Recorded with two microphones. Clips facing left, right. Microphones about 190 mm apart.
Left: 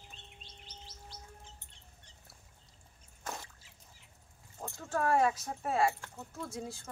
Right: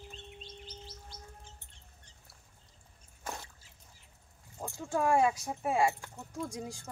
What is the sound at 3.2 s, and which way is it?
Drip, centre (ahead or behind).